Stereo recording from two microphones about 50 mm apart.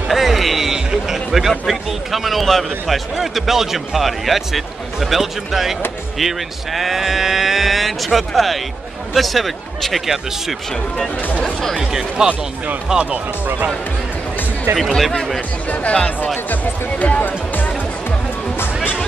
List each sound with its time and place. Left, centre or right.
0.1 s a man's voice: centre
11.7 s speech: centre
12.3 s speech: right
14.8 s speech: centre
17.0 s speech: left